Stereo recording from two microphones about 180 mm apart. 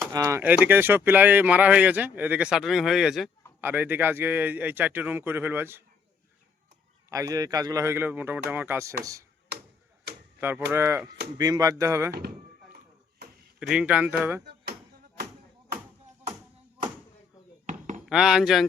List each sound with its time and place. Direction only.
0.1 s speech: 15° right (ahead or behind)
7.1 s speech: 20° right (ahead or behind)
10.7 s speech: 15° right (ahead or behind)
12.7 s ping: 55° right (ahead or behind)
13.6 s speech: 5° right (ahead or behind)
14.4 s a sound: 60° right (ahead or behind)
17.7 s a sound: 45° right (ahead or behind)
18.1 s speech: 5° right (ahead or behind)